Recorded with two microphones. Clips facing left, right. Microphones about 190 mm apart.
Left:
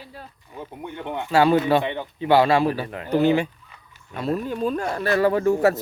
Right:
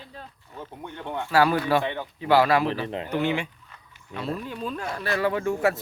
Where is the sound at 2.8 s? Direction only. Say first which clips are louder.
Right 2 dB; 25° right (ahead or behind).